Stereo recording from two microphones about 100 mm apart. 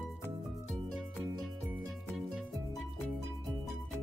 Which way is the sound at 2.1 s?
5° right (ahead or behind).